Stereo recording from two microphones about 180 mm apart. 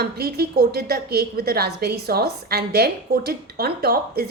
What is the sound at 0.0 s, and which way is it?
A woman's voice, 60° right (ahead or behind).